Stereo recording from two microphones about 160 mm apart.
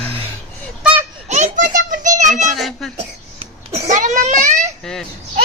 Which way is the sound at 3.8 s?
50° right (ahead or behind).